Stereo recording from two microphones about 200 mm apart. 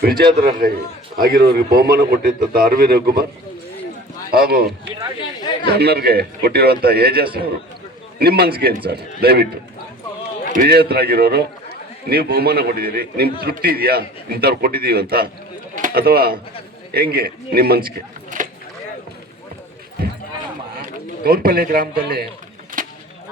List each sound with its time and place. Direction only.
0.0 s a man's voice: 50° right (ahead or behind)
4.3 s a man's voice: 50° right (ahead or behind)
10.5 s a man's voice: 45° right (ahead or behind)
20.8 s speech: 50° right (ahead or behind)
22.8 s a sound: 40° right (ahead or behind)